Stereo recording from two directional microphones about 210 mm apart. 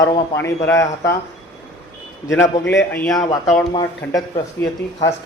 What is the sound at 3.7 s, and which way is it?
Speech, 20° left (ahead or behind).